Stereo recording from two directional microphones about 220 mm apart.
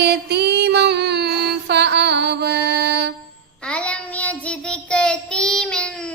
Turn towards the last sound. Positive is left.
turn(degrees=5)  # may be behind; listen again after turning